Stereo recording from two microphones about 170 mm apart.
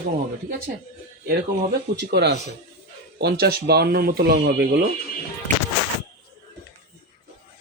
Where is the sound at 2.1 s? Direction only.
80° right.